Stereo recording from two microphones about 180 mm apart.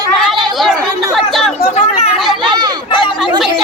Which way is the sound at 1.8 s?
35° left (ahead or behind).